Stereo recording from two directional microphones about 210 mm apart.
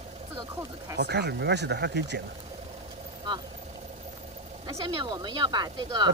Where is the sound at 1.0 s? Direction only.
50° right (ahead or behind).